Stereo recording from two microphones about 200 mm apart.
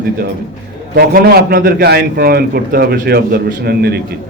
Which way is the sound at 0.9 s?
50° right (ahead or behind).